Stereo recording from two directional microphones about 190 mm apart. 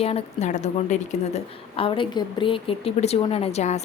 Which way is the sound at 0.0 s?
30° left (ahead or behind).